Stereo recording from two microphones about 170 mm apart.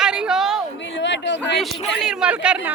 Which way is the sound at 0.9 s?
90° left.